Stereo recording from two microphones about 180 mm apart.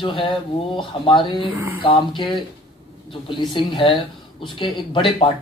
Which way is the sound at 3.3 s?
25° left (ahead or behind).